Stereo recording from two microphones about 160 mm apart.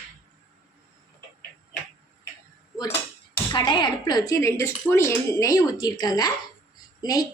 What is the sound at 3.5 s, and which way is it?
Speech, 30° left (ahead or behind).